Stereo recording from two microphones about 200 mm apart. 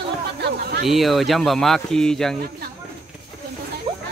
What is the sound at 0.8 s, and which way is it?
Speech, centre (ahead or behind).